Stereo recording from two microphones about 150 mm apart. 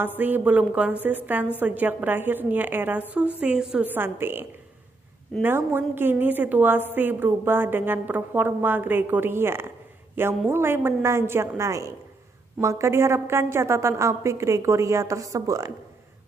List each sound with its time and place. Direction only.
0.0 s a woman's voice: 10° right (ahead or behind)